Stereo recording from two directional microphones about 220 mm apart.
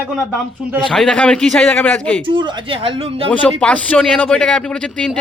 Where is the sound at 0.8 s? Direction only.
Centre (ahead or behind).